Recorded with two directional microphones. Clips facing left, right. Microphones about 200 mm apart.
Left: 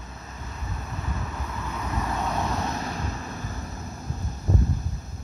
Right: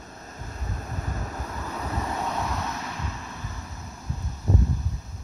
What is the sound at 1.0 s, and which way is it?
Vehicle, 40° right (ahead or behind).